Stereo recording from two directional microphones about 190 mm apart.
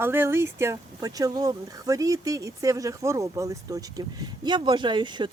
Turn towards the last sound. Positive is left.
turn(degrees=-25)  # may be behind; listen again after turning